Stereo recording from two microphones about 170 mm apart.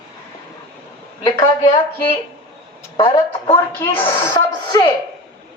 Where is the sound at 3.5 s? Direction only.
15° left (ahead or behind).